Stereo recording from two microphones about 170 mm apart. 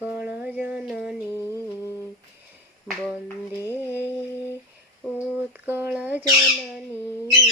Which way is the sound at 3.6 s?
15° left (ahead or behind).